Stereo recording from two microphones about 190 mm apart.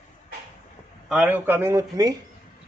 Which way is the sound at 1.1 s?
10° right (ahead or behind).